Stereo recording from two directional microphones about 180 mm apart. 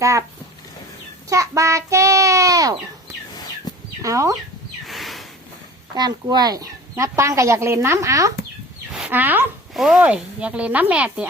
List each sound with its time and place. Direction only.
0.0 s speech: 15° right (ahead or behind)
1.3 s a child's voice: 15° right (ahead or behind)
4.0 s speech: 20° right (ahead or behind)
4.9 s a sound: centre (ahead or behind)
5.9 s speech: 25° right (ahead or behind)
8.9 s speech: 5° right (ahead or behind)